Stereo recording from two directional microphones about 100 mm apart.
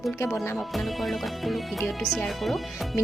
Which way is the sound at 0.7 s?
Centre (ahead or behind).